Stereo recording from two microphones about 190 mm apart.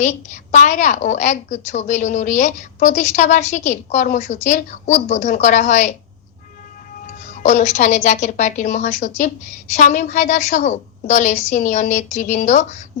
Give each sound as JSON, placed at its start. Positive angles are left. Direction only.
{"t": 0.0, "sound": "a woman's voice", "side_deg": 40}
{"t": 7.4, "sound": "a woman's voice", "side_deg": 35}